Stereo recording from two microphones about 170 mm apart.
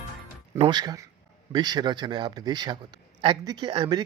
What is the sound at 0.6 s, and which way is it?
Speech, 25° right (ahead or behind).